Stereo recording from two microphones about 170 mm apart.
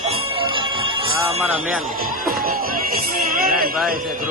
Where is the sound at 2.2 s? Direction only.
55° right (ahead or behind).